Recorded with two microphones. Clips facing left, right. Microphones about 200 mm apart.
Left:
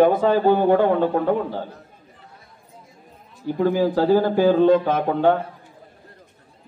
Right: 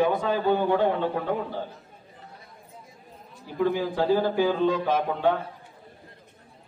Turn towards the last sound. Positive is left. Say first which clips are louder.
# left 5 dB
turn(degrees=55)  # may be behind; listen again after turning